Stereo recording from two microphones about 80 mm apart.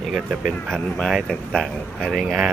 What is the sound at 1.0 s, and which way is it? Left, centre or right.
Speech, centre.